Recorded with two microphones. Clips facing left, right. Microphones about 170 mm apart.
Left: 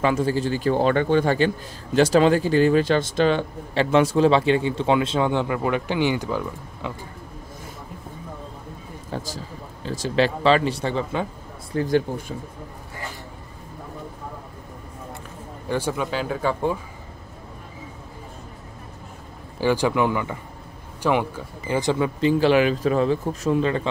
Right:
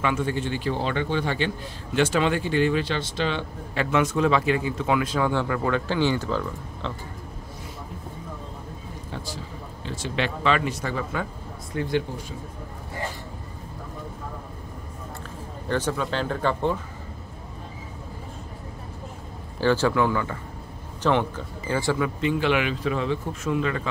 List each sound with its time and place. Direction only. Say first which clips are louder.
0.0 s speech: left 4 dB; 35° left (ahead or behind)
3.7 s a man's voice: left 5 dB; 30° left (ahead or behind); by 6.9 s 15° left (ahead or behind)
9.1 s speech: left 5 dB; 40° left (ahead or behind)
11.7 s speech: left 5 dB; 40° left (ahead or behind)
15.7 s speech: left 1 dB; 10° left (ahead or behind)
19.6 s speech: left 1 dB; 15° left (ahead or behind); by 23.9 s 30° left (ahead or behind)